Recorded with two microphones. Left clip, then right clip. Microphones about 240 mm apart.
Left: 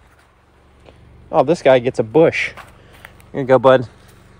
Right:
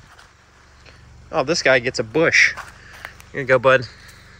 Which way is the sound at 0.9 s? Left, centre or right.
Centre.